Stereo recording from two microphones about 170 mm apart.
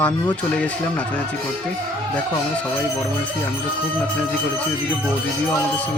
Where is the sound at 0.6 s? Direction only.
10° left (ahead or behind).